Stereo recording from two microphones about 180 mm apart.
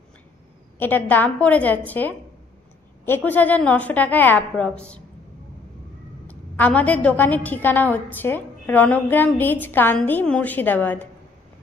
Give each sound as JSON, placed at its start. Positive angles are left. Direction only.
{"t": 0.7, "sound": "a woman's voice", "side_deg": 10}
{"t": 3.3, "sound": "a woman's voice", "side_deg": 10}
{"t": 6.2, "sound": "a woman's voice", "side_deg": 10}